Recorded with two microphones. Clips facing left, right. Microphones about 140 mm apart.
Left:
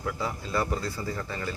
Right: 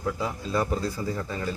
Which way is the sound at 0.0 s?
15° right (ahead or behind).